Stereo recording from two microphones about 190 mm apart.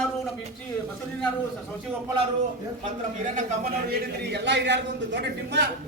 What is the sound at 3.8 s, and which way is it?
A man's voice, 55° right (ahead or behind).